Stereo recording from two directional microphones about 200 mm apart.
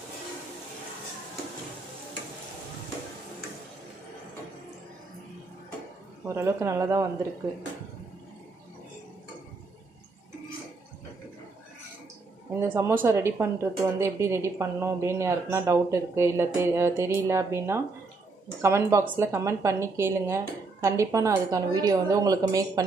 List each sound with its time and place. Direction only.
6.2 s a woman's voice: 15° right (ahead or behind)
12.5 s a woman's voice: 10° right (ahead or behind)